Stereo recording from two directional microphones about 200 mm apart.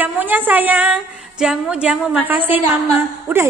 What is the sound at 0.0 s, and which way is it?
A woman's voice, 10° right (ahead or behind).